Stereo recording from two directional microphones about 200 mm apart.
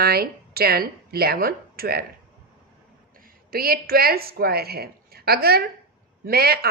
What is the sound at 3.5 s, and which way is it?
A woman's voice, 50° right (ahead or behind).